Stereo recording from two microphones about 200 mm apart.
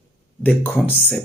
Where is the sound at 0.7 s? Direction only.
10° left (ahead or behind).